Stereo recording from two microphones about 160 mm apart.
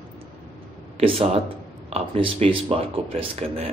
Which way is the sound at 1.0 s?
35° right (ahead or behind).